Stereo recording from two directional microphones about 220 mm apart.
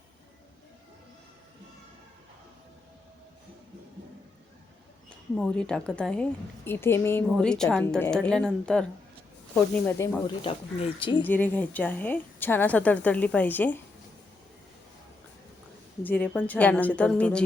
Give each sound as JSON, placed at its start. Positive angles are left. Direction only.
{"t": 5.0, "sound": "a woman's voice", "side_deg": 5}
{"t": 10.2, "sound": "speech", "side_deg": 25}
{"t": 11.3, "sound": "a woman's voice", "side_deg": 5}
{"t": 16.0, "sound": "a woman's voice", "side_deg": 10}